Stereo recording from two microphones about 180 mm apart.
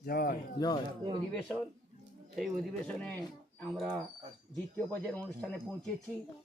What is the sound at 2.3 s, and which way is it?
Speech, centre (ahead or behind).